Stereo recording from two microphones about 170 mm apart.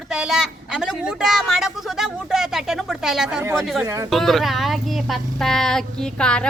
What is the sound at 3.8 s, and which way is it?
Speech, 20° right (ahead or behind).